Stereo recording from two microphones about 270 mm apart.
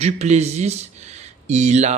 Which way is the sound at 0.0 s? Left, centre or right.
Right.